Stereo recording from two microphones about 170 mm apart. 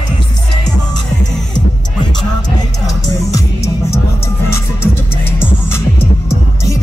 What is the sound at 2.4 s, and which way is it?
Music, 20° left (ahead or behind).